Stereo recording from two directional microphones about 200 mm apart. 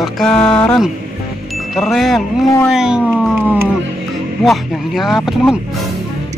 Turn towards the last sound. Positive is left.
turn(degrees=0)  # may be behind; listen again after turning